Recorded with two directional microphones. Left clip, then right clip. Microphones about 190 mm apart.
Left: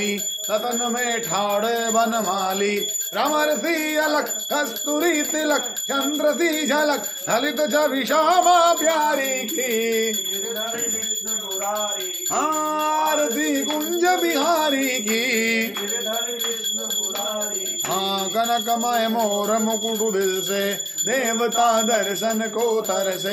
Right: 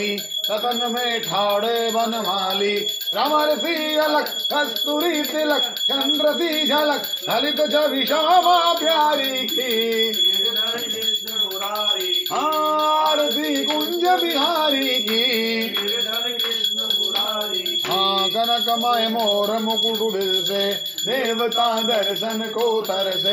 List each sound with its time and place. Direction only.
3.9 s speech: 35° left (ahead or behind)
14.0 s speech: 40° left (ahead or behind)
15.1 s music: 35° left (ahead or behind)
17.9 s a sound: 25° left (ahead or behind)